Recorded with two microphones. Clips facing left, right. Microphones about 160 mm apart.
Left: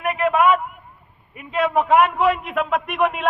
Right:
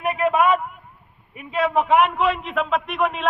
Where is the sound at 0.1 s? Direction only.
20° right (ahead or behind).